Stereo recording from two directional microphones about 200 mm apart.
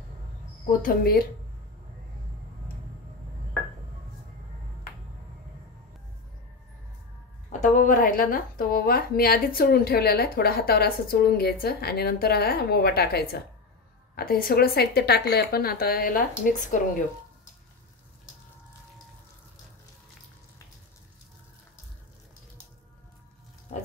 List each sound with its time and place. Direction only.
0.8 s a woman's voice: 45° left (ahead or behind)
7.4 s a woman's voice: 40° left (ahead or behind)